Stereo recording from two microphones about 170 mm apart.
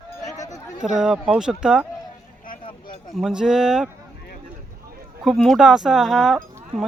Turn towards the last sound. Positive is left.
turn(degrees=0)  # may be behind; listen again after turning